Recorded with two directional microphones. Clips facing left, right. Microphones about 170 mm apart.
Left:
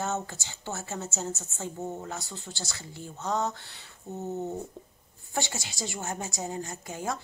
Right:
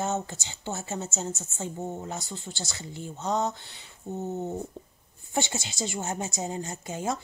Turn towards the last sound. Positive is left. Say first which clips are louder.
# right 3 dB
turn(degrees=-20)  # may be behind; listen again after turning